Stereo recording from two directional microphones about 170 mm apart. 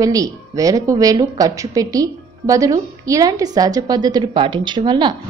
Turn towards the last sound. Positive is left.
turn(degrees=-25)  # may be behind; listen again after turning